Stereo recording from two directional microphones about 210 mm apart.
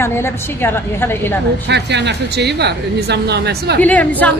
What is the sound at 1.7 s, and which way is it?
Speech, 55° right (ahead or behind).